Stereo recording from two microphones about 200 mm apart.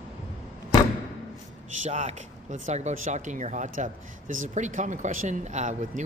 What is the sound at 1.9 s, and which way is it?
Speech, 35° right (ahead or behind).